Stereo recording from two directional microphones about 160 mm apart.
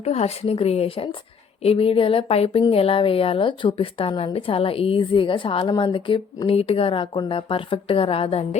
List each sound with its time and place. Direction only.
0.0 s speech: 40° left (ahead or behind)